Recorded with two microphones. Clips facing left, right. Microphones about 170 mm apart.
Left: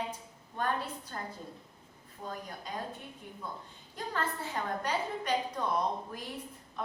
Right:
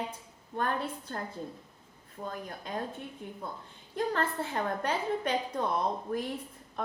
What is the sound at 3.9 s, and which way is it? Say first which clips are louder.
A woman's voice: right 5 dB; 55° right (ahead or behind).